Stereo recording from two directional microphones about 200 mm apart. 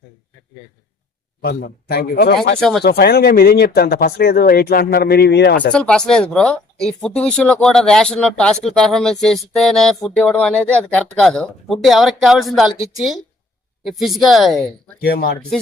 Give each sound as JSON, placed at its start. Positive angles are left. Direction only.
{"t": 1.4, "sound": "speech", "side_deg": 50}
{"t": 2.6, "sound": "speech", "side_deg": 5}
{"t": 2.8, "sound": "speech", "side_deg": 50}
{"t": 5.7, "sound": "speech", "side_deg": 5}
{"t": 15.0, "sound": "speech", "side_deg": 50}